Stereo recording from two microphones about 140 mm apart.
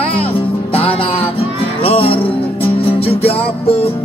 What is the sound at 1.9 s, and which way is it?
Music, 40° left (ahead or behind).